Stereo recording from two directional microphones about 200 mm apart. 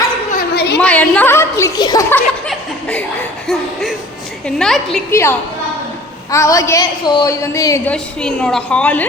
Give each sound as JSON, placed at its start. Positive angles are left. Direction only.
{"t": 0.5, "sound": "a sound", "side_deg": 55}
{"t": 0.8, "sound": "a woman's voice", "side_deg": 5}
{"t": 3.4, "sound": "a woman's voice", "side_deg": 0}
{"t": 7.9, "sound": "a woman's voice", "side_deg": 5}